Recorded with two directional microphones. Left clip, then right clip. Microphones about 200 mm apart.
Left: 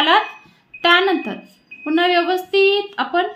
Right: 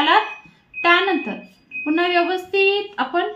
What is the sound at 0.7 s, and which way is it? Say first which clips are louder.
A woman's voice: left 2 dB; 40° left (ahead or behind).